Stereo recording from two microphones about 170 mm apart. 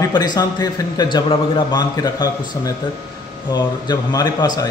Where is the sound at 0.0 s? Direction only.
25° left (ahead or behind).